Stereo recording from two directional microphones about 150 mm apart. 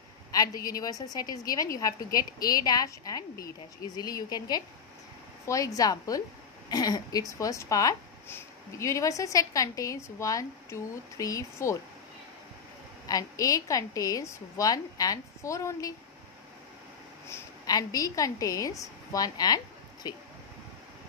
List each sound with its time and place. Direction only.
0.7 s speech: 25° left (ahead or behind)
13.0 s speech: 25° left (ahead or behind)
17.3 s a woman's voice: 25° left (ahead or behind)